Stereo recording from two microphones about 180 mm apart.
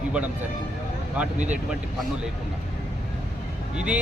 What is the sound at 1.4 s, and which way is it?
Speech, 10° right (ahead or behind).